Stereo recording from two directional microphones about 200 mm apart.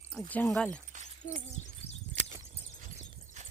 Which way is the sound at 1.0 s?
35° left (ahead or behind).